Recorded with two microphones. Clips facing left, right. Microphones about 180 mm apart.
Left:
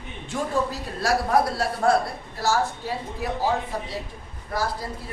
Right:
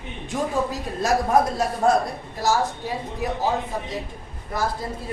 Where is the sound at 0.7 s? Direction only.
20° right (ahead or behind).